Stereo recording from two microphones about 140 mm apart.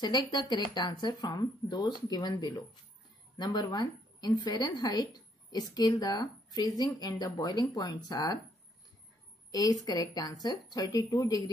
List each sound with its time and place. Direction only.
0.0 s a woman's voice: 30° left (ahead or behind)
9.5 s a woman's voice: 25° left (ahead or behind)